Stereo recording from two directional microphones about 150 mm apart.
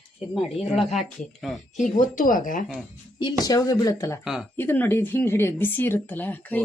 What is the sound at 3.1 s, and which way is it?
Speech, 25° left (ahead or behind).